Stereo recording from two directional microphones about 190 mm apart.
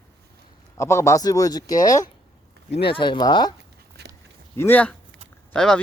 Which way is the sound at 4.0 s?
60° right (ahead or behind).